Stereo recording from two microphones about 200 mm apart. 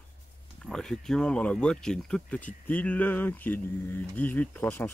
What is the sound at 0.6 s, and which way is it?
Speech, 5° left (ahead or behind).